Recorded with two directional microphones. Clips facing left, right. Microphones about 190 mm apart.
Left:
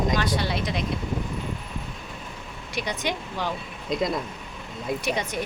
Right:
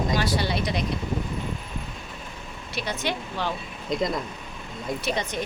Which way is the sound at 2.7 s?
15° left (ahead or behind).